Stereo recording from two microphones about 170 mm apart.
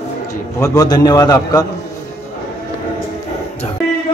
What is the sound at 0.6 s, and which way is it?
A man's voice, 20° left (ahead or behind).